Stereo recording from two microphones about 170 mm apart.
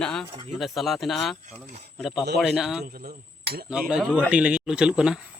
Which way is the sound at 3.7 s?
5° right (ahead or behind).